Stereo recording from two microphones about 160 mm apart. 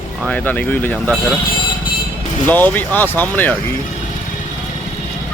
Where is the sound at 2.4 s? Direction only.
10° left (ahead or behind).